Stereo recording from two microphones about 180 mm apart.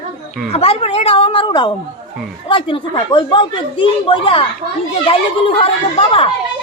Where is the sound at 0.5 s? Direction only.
35° left (ahead or behind).